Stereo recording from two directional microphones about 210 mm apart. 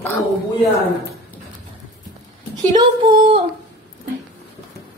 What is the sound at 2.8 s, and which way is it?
Female singing, 20° right (ahead or behind).